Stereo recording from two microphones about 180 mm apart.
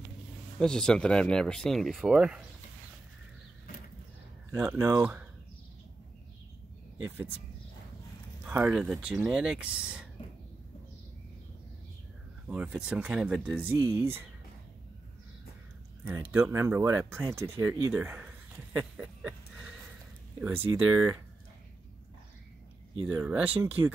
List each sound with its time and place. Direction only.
0.6 s speech: 5° left (ahead or behind)
4.5 s speech: 15° right (ahead or behind)
8.5 s speech: 10° right (ahead or behind)
12.4 s speech: 5° right (ahead or behind)
16.0 s speech: 15° right (ahead or behind)
17.9 s a sound: 10° right (ahead or behind)
20.3 s speech: 10° right (ahead or behind)
23.0 s speech: 10° right (ahead or behind)
23.8 s speech: 20° right (ahead or behind)